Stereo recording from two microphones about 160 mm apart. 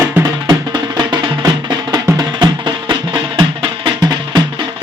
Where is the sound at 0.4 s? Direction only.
25° right (ahead or behind).